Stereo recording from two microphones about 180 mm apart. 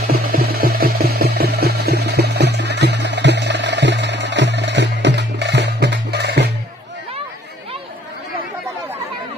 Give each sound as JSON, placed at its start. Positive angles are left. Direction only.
{"t": 0.1, "sound": "music", "side_deg": -55}